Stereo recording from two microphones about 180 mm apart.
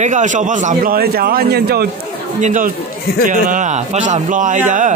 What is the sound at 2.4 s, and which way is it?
A man's voice, 45° right (ahead or behind).